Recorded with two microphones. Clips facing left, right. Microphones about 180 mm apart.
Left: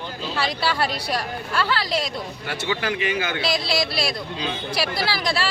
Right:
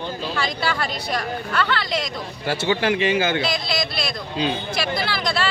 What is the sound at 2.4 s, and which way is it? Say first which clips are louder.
Speech: right 6 dB; 30° right (ahead or behind).